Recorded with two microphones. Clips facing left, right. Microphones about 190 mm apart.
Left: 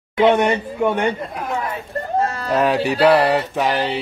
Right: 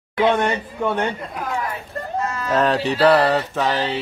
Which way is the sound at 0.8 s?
15° left (ahead or behind).